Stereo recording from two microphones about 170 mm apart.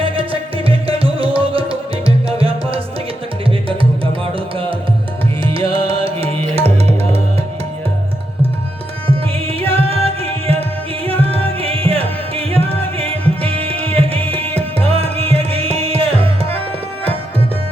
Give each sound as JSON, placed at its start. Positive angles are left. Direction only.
{"t": 0.0, "sound": "music", "side_deg": -35}
{"t": 5.4, "sound": "music", "side_deg": -35}
{"t": 9.5, "sound": "music", "side_deg": -35}